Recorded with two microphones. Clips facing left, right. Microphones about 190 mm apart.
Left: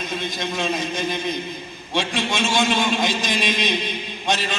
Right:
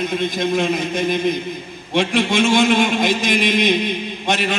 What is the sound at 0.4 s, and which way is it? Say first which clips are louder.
Speech: right 6 dB; 55° right (ahead or behind).